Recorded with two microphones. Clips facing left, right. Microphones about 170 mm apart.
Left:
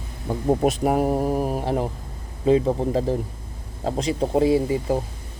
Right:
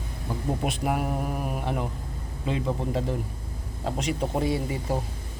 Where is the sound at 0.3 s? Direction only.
45° left (ahead or behind); by 4.9 s 25° left (ahead or behind).